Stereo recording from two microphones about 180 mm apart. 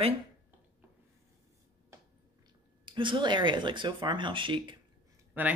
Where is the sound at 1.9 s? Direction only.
15° right (ahead or behind).